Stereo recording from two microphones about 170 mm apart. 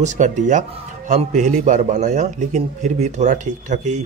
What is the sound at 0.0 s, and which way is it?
A man's voice, 45° right (ahead or behind).